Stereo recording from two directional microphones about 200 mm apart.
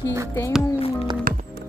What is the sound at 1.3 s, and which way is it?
Music, 45° right (ahead or behind).